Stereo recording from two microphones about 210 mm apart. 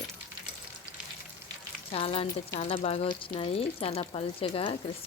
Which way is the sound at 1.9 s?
25° left (ahead or behind).